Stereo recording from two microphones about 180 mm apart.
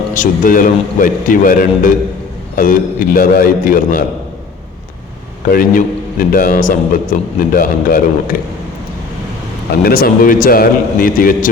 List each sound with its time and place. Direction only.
0.1 s a man's voice: 45° left (ahead or behind)
5.5 s a man's voice: 50° left (ahead or behind)
9.8 s a man's voice: 55° left (ahead or behind)